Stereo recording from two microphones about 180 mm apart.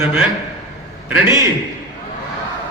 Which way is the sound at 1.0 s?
10° right (ahead or behind).